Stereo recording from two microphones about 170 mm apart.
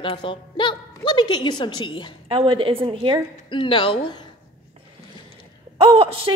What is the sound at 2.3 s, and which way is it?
Speech, 30° right (ahead or behind).